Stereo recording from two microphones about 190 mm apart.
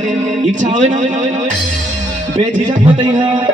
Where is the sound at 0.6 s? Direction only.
40° right (ahead or behind).